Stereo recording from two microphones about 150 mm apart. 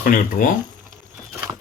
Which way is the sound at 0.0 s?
70° left (ahead or behind).